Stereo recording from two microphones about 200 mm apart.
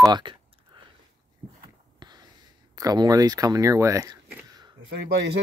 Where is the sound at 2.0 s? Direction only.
20° right (ahead or behind).